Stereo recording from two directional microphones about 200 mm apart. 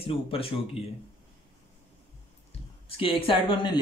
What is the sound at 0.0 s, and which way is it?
Speech, 25° left (ahead or behind).